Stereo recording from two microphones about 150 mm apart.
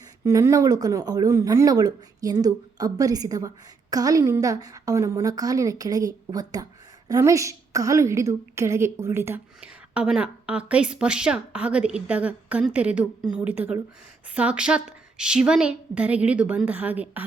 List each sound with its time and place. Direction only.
0.3 s a woman's voice: 20° right (ahead or behind)